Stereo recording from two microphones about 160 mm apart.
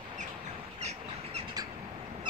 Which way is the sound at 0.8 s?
45° right (ahead or behind).